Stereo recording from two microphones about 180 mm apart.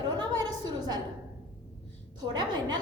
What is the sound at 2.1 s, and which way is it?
Speech, 25° right (ahead or behind).